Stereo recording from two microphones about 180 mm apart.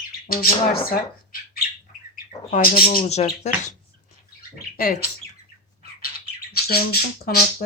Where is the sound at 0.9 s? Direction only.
55° left (ahead or behind).